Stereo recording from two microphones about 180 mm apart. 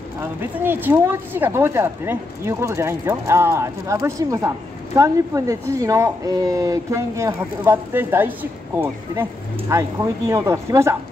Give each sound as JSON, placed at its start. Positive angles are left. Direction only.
{"t": 0.6, "sound": "speech", "side_deg": -10}